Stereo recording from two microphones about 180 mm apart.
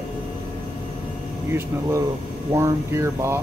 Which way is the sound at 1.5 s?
15° right (ahead or behind).